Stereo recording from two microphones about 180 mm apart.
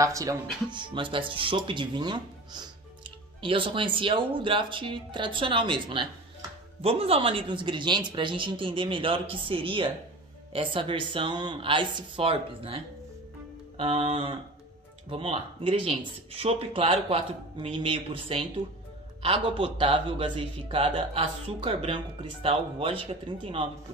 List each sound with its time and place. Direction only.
0.0 s speech: 20° right (ahead or behind)